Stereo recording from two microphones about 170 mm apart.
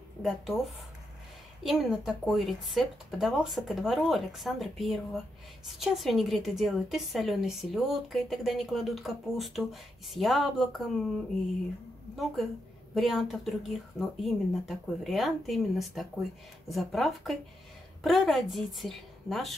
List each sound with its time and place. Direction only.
0.2 s a woman's voice: centre (ahead or behind)
12.9 s a woman's voice: centre (ahead or behind)